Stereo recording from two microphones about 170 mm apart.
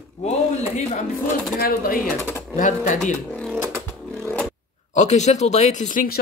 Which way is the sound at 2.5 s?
50° left (ahead or behind).